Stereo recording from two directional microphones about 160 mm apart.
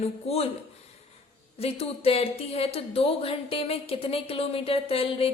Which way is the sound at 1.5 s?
40° left (ahead or behind).